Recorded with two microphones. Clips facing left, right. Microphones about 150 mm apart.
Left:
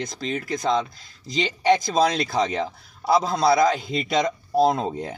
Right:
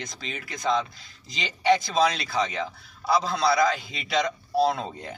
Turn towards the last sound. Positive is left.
turn(degrees=45)  # may be behind; listen again after turning